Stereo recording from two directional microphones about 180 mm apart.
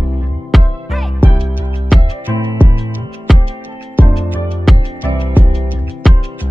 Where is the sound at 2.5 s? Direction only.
15° right (ahead or behind).